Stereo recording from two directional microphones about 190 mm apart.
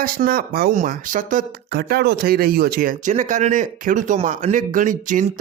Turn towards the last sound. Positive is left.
turn(degrees=-45)  # may be behind; listen again after turning